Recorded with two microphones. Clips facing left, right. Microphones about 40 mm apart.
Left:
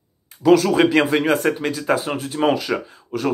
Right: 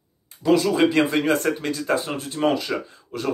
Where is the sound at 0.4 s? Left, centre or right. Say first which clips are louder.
Left 4 dB; left.